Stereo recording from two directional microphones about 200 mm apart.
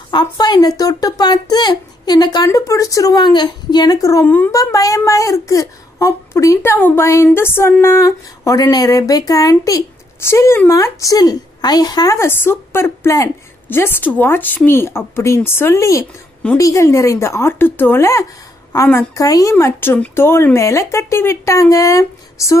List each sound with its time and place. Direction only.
0.1 s speech: 20° left (ahead or behind)